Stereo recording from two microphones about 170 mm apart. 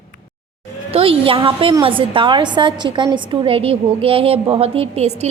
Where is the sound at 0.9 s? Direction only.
35° right (ahead or behind).